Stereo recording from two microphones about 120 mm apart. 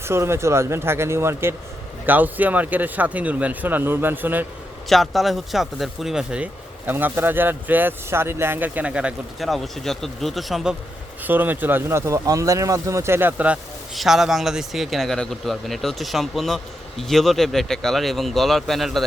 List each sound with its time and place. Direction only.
0.0 s speech: 20° right (ahead or behind)
4.9 s speech: centre (ahead or behind)
11.2 s speech: 15° right (ahead or behind)
13.9 s a man's voice: centre (ahead or behind)